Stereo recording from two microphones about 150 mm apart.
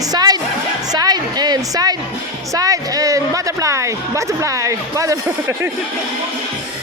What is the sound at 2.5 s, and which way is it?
Speech, 25° right (ahead or behind).